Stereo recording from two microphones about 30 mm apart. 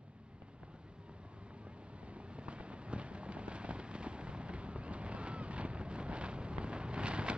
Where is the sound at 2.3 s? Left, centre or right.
Right.